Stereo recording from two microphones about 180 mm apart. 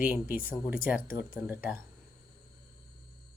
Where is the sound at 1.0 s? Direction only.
50° left (ahead or behind).